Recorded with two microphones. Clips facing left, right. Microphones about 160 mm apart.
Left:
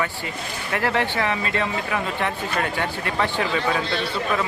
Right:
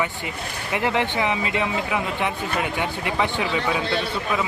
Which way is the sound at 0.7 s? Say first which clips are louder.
Even; 15° right (ahead or behind).